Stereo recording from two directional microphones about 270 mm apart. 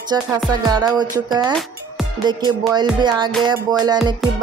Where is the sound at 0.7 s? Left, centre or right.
Centre.